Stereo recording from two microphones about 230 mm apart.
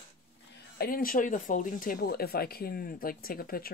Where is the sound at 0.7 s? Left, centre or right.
Left.